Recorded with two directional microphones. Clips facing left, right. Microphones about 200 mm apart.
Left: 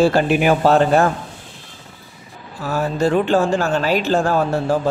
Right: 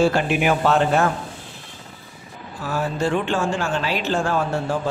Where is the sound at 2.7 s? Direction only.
40° left (ahead or behind).